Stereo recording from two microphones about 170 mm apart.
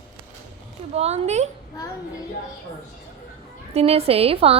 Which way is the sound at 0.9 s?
35° right (ahead or behind).